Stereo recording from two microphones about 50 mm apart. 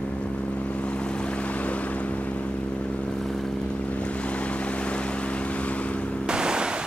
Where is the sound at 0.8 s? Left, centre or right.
Centre.